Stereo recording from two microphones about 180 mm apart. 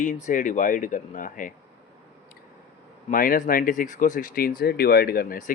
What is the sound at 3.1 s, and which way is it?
Speech, 50° left (ahead or behind).